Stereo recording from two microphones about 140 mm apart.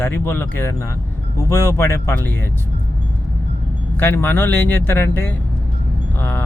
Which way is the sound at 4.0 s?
15° left (ahead or behind).